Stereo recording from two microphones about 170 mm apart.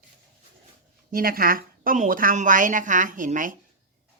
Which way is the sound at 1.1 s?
60° right (ahead or behind).